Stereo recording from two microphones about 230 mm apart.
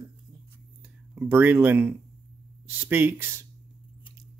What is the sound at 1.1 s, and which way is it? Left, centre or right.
Speech, centre.